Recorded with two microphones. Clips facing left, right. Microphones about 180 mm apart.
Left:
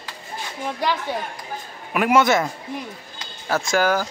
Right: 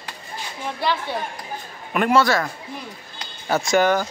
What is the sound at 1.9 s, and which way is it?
Speech, 5° left (ahead or behind).